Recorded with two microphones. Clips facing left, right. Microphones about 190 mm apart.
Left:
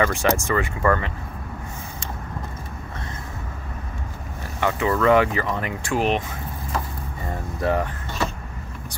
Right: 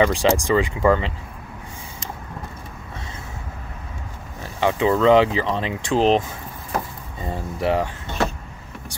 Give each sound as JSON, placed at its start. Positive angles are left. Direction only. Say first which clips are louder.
{"t": 0.0, "sound": "speech", "louder": "right 3 dB", "side_deg": -15}
{"t": 4.6, "sound": "speech", "louder": "right 3 dB", "side_deg": -20}
{"t": 7.2, "sound": "speech", "louder": "right 2 dB", "side_deg": -15}